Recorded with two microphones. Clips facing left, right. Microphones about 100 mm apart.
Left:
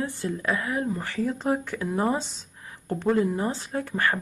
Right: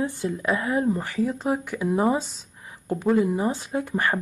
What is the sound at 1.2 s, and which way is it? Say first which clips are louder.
Speech: left 1 dB; centre (ahead or behind).